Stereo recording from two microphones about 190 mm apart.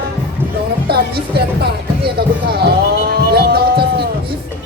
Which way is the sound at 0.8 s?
55° right (ahead or behind).